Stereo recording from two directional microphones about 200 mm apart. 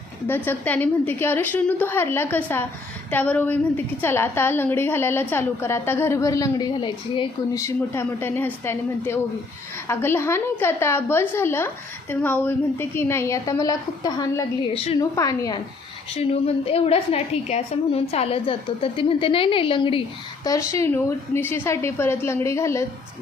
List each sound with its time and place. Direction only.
0.3 s a woman's voice: 10° left (ahead or behind)
16.1 s a woman's voice: 30° left (ahead or behind); by 22.9 s 15° left (ahead or behind)